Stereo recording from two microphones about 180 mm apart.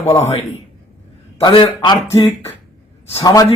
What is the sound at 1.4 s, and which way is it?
Speech, 25° left (ahead or behind).